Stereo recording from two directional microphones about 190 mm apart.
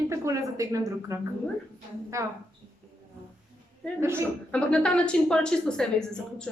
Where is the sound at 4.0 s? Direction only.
15° right (ahead or behind).